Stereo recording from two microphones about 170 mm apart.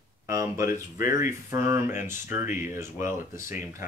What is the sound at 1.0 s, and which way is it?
Speech, 50° left (ahead or behind).